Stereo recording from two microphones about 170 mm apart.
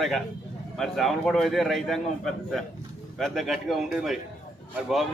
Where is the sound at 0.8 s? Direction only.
Centre (ahead or behind).